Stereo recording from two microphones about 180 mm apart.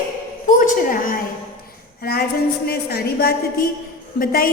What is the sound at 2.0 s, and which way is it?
A woman's voice, 60° left (ahead or behind).